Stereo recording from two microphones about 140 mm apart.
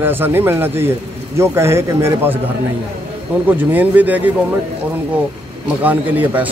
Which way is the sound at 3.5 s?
15° right (ahead or behind).